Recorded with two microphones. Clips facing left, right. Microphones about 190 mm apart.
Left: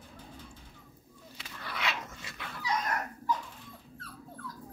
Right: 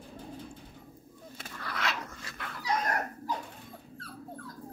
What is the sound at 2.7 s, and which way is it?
Dog, 45° right (ahead or behind).